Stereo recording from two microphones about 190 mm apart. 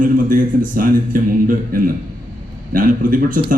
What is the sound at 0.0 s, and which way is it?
A man's voice, 45° right (ahead or behind).